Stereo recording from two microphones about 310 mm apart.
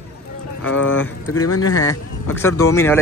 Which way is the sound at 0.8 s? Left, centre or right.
Left.